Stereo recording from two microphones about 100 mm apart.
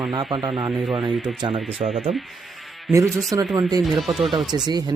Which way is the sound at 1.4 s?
50° right (ahead or behind).